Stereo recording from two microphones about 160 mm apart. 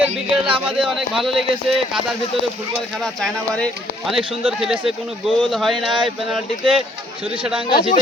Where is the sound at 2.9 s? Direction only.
Centre (ahead or behind).